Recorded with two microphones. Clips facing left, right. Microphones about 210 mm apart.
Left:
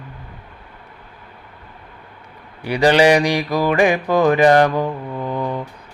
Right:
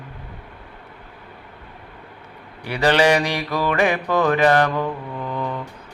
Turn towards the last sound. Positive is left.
turn(degrees=30)  # may be behind; listen again after turning